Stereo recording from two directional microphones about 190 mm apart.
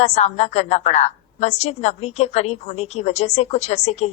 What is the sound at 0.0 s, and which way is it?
A woman's voice, 35° left (ahead or behind).